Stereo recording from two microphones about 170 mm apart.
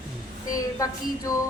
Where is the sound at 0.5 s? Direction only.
20° left (ahead or behind).